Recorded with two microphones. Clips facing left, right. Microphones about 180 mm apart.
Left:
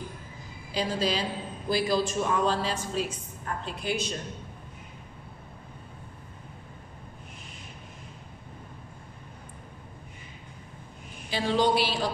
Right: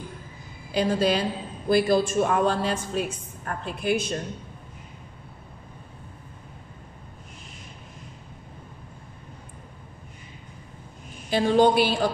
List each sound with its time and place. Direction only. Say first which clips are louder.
0.7 s a woman's voice: right 6 dB; 55° right (ahead or behind)
11.2 s speech: right 6 dB; 50° right (ahead or behind)